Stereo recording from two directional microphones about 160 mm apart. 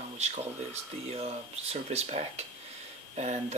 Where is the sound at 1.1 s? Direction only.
40° right (ahead or behind).